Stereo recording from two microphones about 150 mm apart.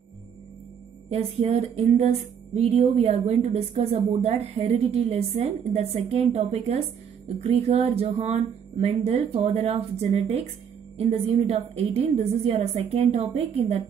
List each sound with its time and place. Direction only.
1.1 s speech: 45° right (ahead or behind)